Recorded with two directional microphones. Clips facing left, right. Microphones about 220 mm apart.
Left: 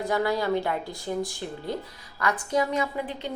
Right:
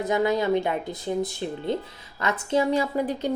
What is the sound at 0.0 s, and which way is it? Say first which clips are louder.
A woman's voice: right 3 dB; 20° right (ahead or behind).